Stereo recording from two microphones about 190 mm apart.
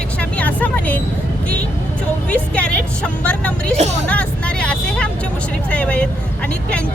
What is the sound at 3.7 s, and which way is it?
Speech, 35° right (ahead or behind).